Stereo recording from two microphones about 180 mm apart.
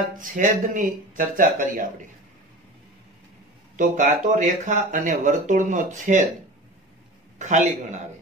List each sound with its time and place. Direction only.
0.2 s speech: 45° right (ahead or behind)
3.7 s speech: 45° right (ahead or behind)
7.3 s speech: 40° right (ahead or behind)